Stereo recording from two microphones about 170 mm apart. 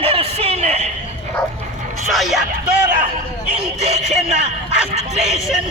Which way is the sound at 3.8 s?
40° right (ahead or behind).